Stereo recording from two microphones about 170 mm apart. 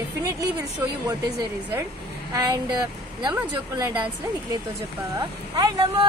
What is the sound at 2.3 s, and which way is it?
Speech, 20° right (ahead or behind).